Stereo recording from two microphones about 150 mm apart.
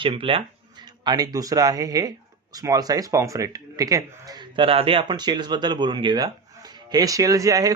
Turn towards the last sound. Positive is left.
turn(degrees=-25)  # may be behind; listen again after turning